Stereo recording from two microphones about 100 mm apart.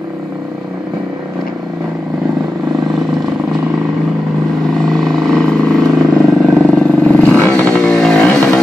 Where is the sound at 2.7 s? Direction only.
Centre (ahead or behind).